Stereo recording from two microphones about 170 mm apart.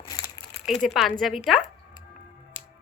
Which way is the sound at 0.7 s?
Centre (ahead or behind).